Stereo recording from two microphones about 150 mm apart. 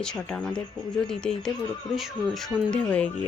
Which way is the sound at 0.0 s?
5° left (ahead or behind).